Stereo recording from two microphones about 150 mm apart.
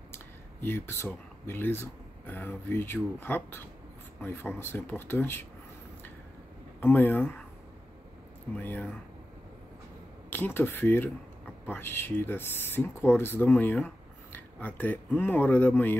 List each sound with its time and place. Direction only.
0.1 s a sound: 15° left (ahead or behind)
1.4 s speech: 15° left (ahead or behind)
6.8 s speech: 15° left (ahead or behind)
8.5 s speech: 15° left (ahead or behind)
10.3 s speech: 15° left (ahead or behind)